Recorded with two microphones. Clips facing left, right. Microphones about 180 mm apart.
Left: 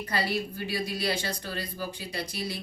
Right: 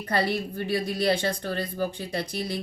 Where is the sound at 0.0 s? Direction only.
55° right (ahead or behind).